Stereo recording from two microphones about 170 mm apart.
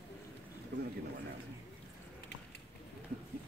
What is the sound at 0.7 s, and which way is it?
Speech, 90° right.